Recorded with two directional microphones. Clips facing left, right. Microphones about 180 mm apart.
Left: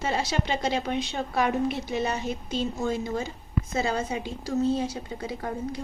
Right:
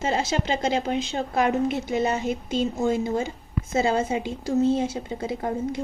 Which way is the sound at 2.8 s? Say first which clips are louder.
Right 5 dB; 25° right (ahead or behind).